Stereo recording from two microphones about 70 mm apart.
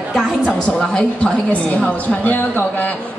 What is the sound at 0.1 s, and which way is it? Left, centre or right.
A woman's voice, centre.